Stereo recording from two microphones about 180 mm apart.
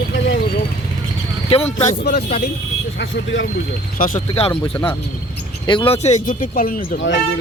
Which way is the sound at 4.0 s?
40° left (ahead or behind).